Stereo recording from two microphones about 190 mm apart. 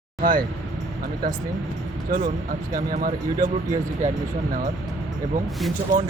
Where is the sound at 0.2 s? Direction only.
45° right (ahead or behind).